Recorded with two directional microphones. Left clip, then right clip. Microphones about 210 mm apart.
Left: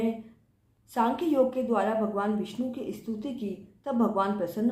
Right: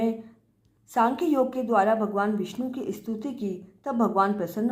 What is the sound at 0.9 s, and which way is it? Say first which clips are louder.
A woman's voice: right 2 dB; 45° right (ahead or behind).